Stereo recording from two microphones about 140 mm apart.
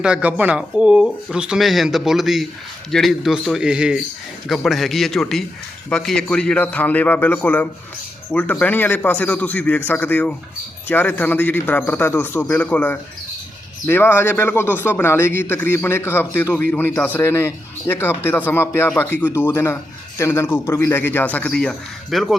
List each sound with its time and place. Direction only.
0.0 s speech: 10° right (ahead or behind)